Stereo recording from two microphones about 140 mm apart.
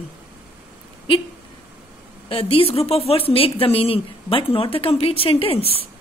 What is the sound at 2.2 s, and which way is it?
Speech, 40° left (ahead or behind).